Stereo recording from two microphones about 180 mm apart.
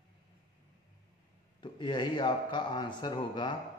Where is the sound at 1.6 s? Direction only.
25° left (ahead or behind).